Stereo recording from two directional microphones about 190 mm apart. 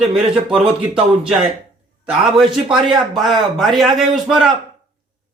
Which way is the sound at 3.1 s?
Centre (ahead or behind).